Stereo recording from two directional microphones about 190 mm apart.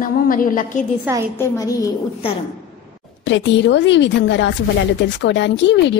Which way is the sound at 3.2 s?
70° left (ahead or behind).